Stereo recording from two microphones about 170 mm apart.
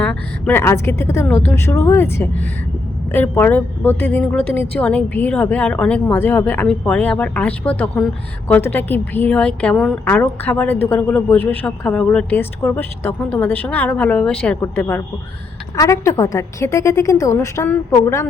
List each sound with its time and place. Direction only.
0.0 s a woman's voice: 10° left (ahead or behind)